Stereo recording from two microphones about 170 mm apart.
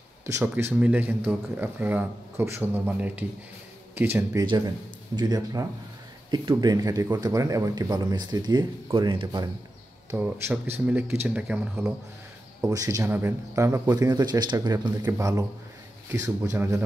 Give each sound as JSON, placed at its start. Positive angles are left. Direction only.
{"t": 0.3, "sound": "a man's voice", "side_deg": -15}
{"t": 10.1, "sound": "a man's voice", "side_deg": -10}
{"t": 16.5, "sound": "speech", "side_deg": -15}